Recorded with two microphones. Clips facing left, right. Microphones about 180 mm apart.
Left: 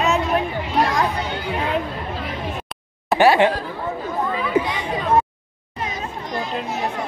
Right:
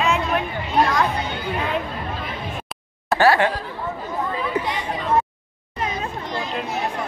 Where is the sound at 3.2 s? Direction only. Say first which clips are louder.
Left 2 dB; 20° left (ahead or behind).